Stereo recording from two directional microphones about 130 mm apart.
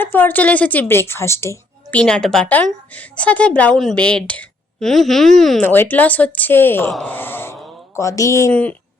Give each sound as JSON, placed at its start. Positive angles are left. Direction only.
{"t": 0.0, "sound": "a woman's voice", "side_deg": 15}
{"t": 2.0, "sound": "a woman's voice", "side_deg": 10}
{"t": 5.5, "sound": "a woman's voice", "side_deg": 15}
{"t": 7.0, "sound": "a sound", "side_deg": 15}
{"t": 7.9, "sound": "speech", "side_deg": 25}